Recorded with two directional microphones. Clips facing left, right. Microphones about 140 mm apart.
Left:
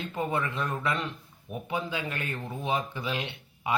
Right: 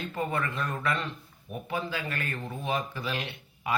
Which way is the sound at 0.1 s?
20° left (ahead or behind).